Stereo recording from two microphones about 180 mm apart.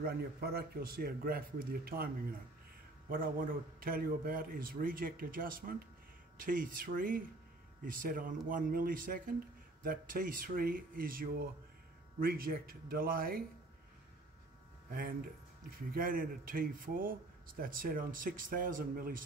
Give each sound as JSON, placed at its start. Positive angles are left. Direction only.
{"t": 0.0, "sound": "a man's voice", "side_deg": -60}
{"t": 3.1, "sound": "a man's voice", "side_deg": -50}
{"t": 14.9, "sound": "speech", "side_deg": -50}